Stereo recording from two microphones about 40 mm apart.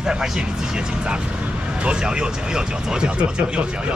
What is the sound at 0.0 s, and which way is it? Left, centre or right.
Speech, centre.